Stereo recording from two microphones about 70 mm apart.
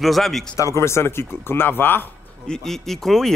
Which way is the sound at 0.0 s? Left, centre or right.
Centre.